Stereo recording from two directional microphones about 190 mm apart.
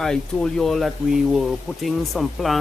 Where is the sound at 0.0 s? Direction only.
Centre (ahead or behind).